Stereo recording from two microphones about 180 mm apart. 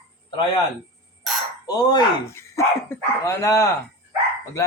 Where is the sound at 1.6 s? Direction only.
20° left (ahead or behind).